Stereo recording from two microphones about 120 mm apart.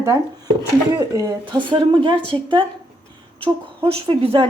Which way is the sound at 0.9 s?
35° right (ahead or behind).